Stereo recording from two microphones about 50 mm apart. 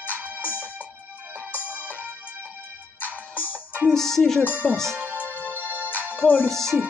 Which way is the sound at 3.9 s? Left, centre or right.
Centre.